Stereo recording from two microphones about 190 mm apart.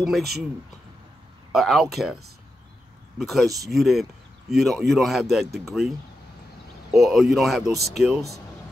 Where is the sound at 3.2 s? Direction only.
Centre (ahead or behind).